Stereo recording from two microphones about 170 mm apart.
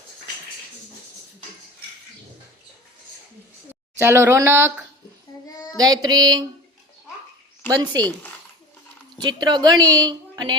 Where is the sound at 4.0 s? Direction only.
15° right (ahead or behind).